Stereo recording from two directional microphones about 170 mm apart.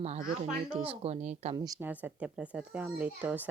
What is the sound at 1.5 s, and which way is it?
Speech, 25° right (ahead or behind).